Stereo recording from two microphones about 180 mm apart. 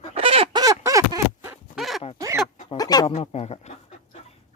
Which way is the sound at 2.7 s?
20° left (ahead or behind).